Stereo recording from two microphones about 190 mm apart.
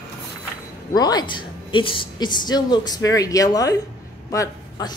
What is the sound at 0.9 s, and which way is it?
A woman's voice, 20° left (ahead or behind).